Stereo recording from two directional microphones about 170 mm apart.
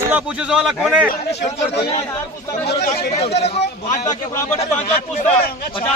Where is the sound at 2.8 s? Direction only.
65° left (ahead or behind).